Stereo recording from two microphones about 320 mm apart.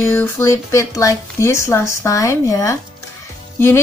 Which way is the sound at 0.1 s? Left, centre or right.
Centre.